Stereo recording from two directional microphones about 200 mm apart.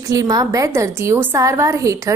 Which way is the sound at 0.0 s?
15° right (ahead or behind).